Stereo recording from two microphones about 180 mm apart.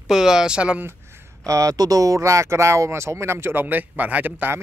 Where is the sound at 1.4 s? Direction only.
20° right (ahead or behind).